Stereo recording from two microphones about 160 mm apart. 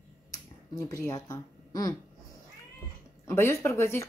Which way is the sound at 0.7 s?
20° left (ahead or behind).